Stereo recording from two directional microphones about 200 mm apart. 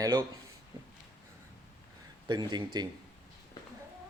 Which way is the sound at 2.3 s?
20° right (ahead or behind).